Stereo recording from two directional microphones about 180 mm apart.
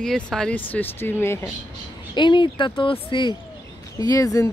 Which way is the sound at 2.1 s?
25° left (ahead or behind).